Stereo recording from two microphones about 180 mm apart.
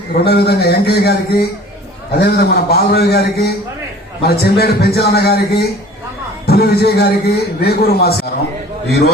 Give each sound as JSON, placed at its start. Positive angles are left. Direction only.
{"t": 0.3, "sound": "a man's voice", "side_deg": 65}